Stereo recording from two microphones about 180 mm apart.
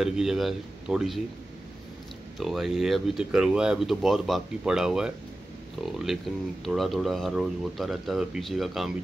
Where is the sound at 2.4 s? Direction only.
Centre (ahead or behind).